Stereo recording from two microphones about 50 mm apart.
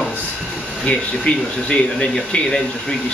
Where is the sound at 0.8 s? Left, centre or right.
Centre.